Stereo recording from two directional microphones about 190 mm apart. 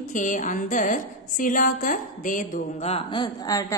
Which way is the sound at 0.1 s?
40° left (ahead or behind).